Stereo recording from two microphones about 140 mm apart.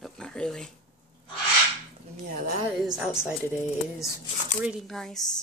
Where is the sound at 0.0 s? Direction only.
5° left (ahead or behind).